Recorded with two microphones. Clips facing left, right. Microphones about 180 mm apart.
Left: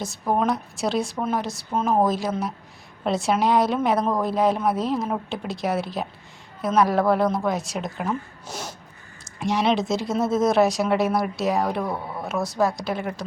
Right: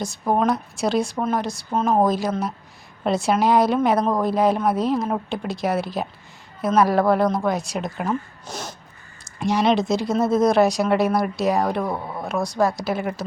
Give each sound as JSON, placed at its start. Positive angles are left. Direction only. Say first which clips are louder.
{"t": 0.3, "sound": "a woman's voice", "louder": "right 2 dB", "side_deg": 0}
{"t": 11.9, "sound": "speech", "louder": "right 2 dB", "side_deg": -15}
{"t": 12.2, "sound": "a woman's voice", "louder": "right 2 dB", "side_deg": 0}